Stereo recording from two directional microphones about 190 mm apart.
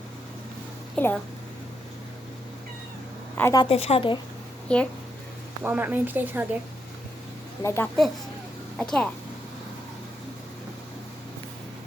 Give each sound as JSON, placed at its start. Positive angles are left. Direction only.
{"t": 0.9, "sound": "a child's voice", "side_deg": 5}
{"t": 3.3, "sound": "a woman's voice", "side_deg": 10}
{"t": 3.6, "sound": "a woman's voice", "side_deg": 30}
{"t": 4.7, "sound": "speech", "side_deg": 5}
{"t": 5.6, "sound": "a woman's voice", "side_deg": -10}
{"t": 7.6, "sound": "a child's voice", "side_deg": 15}